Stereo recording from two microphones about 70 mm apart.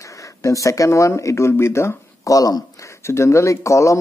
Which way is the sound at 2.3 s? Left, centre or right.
Left.